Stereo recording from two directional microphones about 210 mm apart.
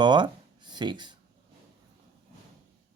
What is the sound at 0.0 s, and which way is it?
Speech, 20° right (ahead or behind).